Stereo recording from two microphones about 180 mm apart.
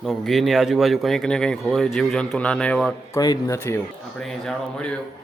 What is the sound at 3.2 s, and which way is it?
Speech, 20° left (ahead or behind).